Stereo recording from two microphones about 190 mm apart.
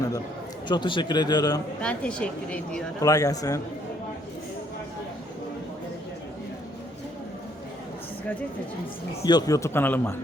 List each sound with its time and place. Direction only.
0.7 s a man's voice: 25° left (ahead or behind)
1.8 s a woman's voice: 5° left (ahead or behind)
3.0 s a man's voice: 20° left (ahead or behind)
9.2 s a man's voice: 20° left (ahead or behind)